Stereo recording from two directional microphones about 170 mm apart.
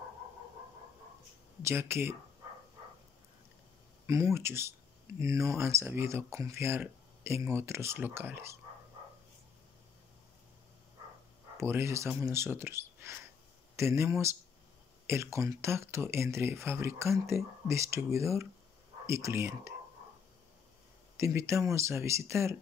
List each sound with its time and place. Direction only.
1.6 s speech: 15° right (ahead or behind)
4.1 s speech: 15° right (ahead or behind)
11.5 s speech: 15° right (ahead or behind)
21.2 s speech: 15° right (ahead or behind)